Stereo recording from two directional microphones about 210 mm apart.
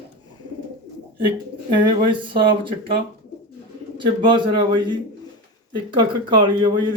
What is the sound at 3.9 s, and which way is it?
Speech, 20° right (ahead or behind).